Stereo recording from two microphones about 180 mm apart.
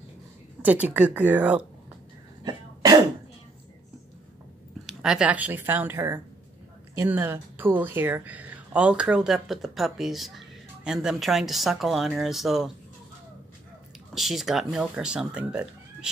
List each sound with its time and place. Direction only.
0.6 s a woman's voice: 10° right (ahead or behind)
2.4 s cough: 20° right (ahead or behind)
4.8 s a woman's voice: 5° right (ahead or behind)
14.1 s speech: centre (ahead or behind)